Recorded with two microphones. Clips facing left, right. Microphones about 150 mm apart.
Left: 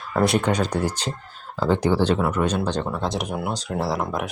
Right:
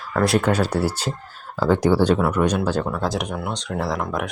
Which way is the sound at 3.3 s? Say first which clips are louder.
Even; 10° left (ahead or behind).